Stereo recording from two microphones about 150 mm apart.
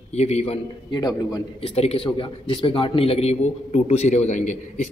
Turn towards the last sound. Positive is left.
turn(degrees=55)  # may be behind; listen again after turning